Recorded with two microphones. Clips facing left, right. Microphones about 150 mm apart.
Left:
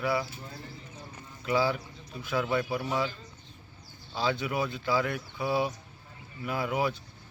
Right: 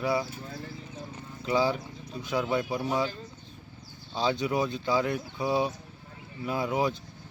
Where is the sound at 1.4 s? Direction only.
20° right (ahead or behind).